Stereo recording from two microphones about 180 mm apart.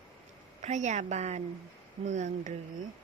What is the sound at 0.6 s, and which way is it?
A woman's voice, 40° right (ahead or behind).